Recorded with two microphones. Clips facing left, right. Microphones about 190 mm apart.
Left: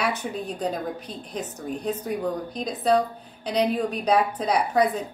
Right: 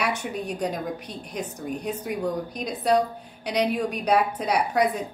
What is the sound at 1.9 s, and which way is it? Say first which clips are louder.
Speech: left 4 dB; 35° left (ahead or behind).